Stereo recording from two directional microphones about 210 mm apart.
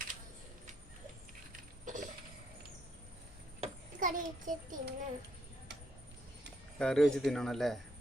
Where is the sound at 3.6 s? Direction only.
40° right (ahead or behind).